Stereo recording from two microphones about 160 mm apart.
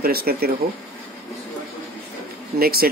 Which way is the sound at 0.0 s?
70° right (ahead or behind).